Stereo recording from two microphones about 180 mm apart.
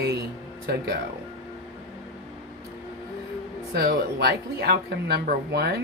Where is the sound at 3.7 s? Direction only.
60° right (ahead or behind).